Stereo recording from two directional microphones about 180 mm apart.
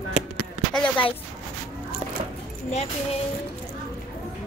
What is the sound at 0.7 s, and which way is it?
Speech, 5° left (ahead or behind).